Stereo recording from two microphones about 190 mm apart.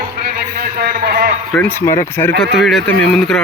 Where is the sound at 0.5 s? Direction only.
55° right (ahead or behind).